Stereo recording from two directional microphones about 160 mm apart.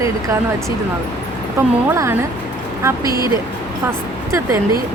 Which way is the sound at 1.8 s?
15° right (ahead or behind).